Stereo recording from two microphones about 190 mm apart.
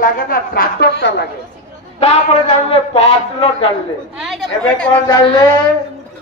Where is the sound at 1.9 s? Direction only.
30° left (ahead or behind).